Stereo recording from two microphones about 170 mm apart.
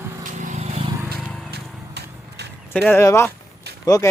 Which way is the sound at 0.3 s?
45° right (ahead or behind).